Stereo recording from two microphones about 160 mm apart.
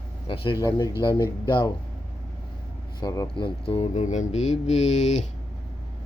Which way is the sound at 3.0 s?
25° left (ahead or behind).